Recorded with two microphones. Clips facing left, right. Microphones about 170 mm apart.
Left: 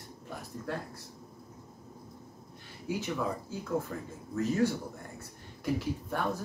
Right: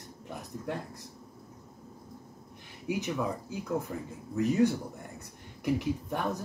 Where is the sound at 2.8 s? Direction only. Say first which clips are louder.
Right 1 dB; 15° right (ahead or behind).